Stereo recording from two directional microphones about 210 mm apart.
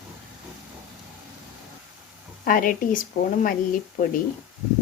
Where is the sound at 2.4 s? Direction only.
40° left (ahead or behind).